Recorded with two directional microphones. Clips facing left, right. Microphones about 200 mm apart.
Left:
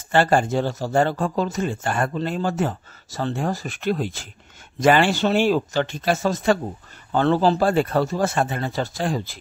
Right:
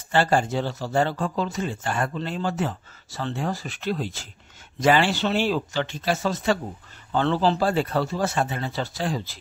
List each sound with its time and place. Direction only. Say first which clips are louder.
0.1 s speech: left 3 dB; 50° left (ahead or behind)